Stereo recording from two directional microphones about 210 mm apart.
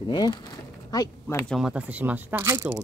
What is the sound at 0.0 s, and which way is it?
Speech, 20° left (ahead or behind).